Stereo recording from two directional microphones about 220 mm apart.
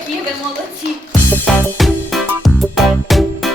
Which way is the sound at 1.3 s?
Centre (ahead or behind).